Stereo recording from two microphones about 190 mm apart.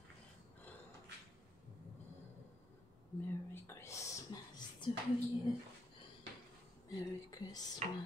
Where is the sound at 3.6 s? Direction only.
15° left (ahead or behind).